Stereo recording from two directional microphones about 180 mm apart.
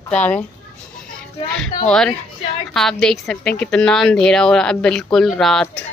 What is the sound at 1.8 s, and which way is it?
A woman's voice, 5° left (ahead or behind).